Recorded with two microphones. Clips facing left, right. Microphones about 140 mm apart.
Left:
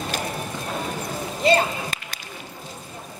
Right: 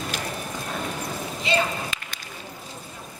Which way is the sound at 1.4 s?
40° left (ahead or behind).